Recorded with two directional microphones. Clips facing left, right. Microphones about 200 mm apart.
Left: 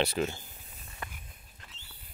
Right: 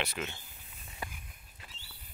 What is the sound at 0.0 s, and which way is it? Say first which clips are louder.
Speech: left 8 dB; 35° left (ahead or behind).